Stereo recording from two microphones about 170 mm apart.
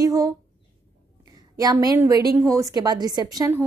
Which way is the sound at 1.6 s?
20° right (ahead or behind).